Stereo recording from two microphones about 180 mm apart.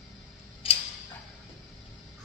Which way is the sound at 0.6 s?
30° left (ahead or behind).